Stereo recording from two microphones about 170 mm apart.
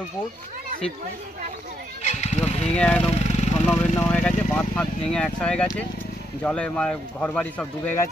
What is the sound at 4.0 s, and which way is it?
Speech, 5° left (ahead or behind).